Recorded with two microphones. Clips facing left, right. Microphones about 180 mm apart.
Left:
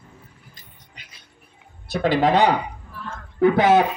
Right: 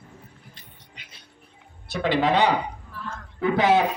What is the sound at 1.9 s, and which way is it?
A man's voice, 40° left (ahead or behind).